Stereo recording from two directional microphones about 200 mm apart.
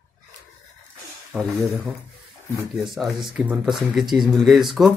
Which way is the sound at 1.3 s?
10° right (ahead or behind).